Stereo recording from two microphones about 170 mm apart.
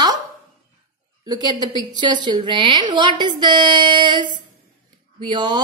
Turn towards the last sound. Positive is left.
turn(degrees=-25)  # may be behind; listen again after turning